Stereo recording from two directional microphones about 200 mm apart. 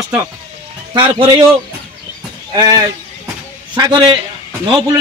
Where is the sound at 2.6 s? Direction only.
20° right (ahead or behind).